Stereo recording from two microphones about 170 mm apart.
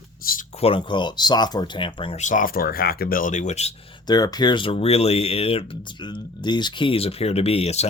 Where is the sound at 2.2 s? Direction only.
50° left (ahead or behind).